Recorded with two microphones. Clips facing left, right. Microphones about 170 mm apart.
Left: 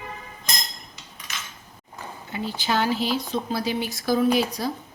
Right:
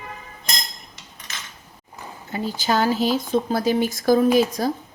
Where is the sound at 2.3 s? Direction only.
40° right (ahead or behind).